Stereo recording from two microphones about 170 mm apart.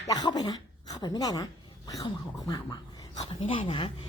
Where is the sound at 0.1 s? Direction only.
25° left (ahead or behind).